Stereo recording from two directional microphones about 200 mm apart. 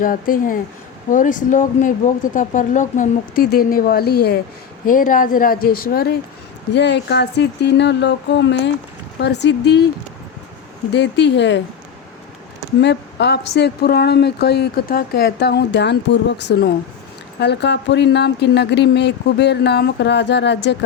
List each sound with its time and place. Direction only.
0.0 s speech: 45° left (ahead or behind)
4.9 s a woman's voice: 40° left (ahead or behind); by 9.8 s 60° left (ahead or behind)
10.9 s a woman's voice: 60° left (ahead or behind)
12.8 s a woman's voice: 60° left (ahead or behind)